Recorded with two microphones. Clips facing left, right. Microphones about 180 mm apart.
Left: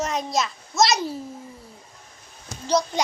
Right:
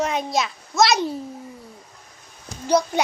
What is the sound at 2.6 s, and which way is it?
Speech, 10° right (ahead or behind).